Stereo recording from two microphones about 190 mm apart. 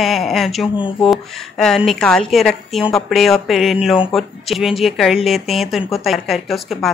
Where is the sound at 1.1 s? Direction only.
Centre (ahead or behind).